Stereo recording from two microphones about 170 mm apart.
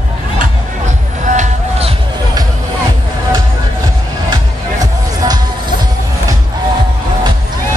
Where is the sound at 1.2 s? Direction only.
45° right (ahead or behind).